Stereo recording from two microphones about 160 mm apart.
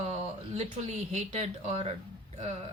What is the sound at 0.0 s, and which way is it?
Speech, 40° right (ahead or behind).